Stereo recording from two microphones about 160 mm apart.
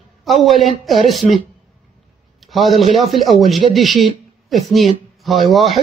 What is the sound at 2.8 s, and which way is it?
Speech, 40° left (ahead or behind).